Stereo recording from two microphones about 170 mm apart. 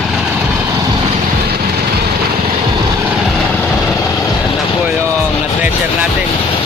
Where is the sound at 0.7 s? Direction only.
20° right (ahead or behind).